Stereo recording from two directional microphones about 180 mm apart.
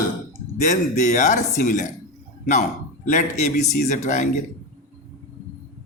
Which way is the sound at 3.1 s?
40° left (ahead or behind).